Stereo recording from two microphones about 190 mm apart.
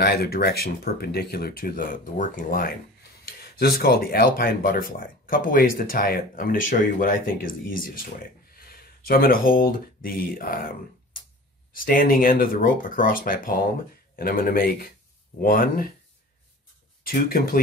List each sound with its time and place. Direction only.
0.0 s speech: 55° left (ahead or behind)
11.7 s speech: 50° left (ahead or behind)
17.1 s speech: 50° left (ahead or behind)